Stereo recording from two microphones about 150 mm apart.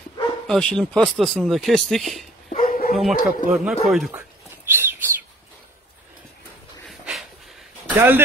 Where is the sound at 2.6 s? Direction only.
70° left (ahead or behind).